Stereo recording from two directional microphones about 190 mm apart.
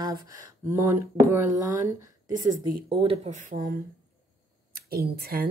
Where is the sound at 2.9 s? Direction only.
30° right (ahead or behind); by 3.7 s 45° right (ahead or behind).